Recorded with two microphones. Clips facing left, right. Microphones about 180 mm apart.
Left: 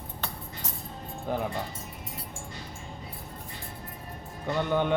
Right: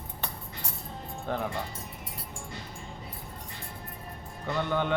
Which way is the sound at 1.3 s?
10° left (ahead or behind).